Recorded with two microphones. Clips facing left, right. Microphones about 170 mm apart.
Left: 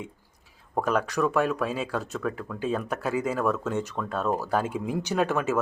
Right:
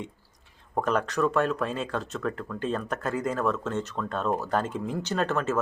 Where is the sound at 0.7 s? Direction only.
5° left (ahead or behind).